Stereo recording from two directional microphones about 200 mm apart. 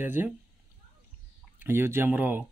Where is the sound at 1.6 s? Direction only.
10° right (ahead or behind).